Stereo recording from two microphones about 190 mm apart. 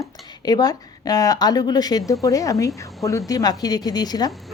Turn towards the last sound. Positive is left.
turn(degrees=20)  # may be behind; listen again after turning